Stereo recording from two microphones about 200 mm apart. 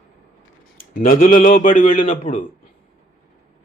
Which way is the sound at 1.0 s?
45° left (ahead or behind).